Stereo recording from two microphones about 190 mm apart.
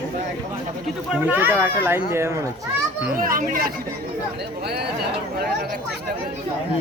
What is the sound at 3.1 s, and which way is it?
Speech, 45° right (ahead or behind).